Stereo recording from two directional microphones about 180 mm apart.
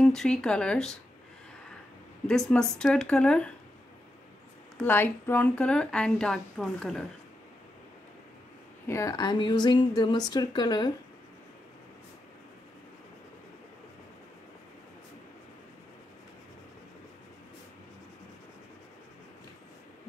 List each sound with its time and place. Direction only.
0.0 s speech: 5° left (ahead or behind)
2.2 s speech: 5° left (ahead or behind)
4.8 s speech: 10° left (ahead or behind)
8.8 s speech: 15° left (ahead or behind)